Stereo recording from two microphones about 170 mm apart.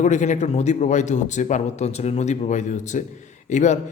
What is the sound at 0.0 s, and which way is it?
A man's voice, 45° left (ahead or behind).